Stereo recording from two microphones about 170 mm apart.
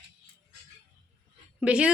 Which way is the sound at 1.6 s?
5° right (ahead or behind).